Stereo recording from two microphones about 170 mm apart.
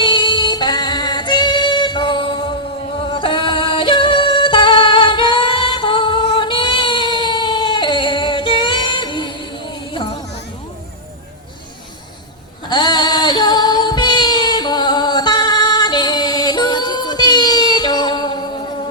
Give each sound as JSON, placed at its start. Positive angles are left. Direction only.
{"t": 0.0, "sound": "yodeling", "side_deg": 25}
{"t": 12.6, "sound": "female singing", "side_deg": 25}